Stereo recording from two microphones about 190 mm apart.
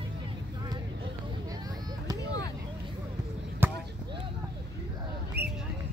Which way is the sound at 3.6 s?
10° right (ahead or behind).